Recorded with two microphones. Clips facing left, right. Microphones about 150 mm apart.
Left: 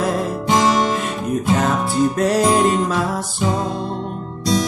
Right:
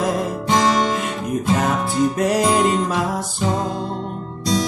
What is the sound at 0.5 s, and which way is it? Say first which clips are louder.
Guitar: left 1 dB; 5° left (ahead or behind).